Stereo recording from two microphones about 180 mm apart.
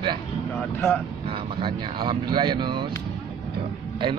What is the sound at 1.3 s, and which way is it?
Speech, 30° right (ahead or behind).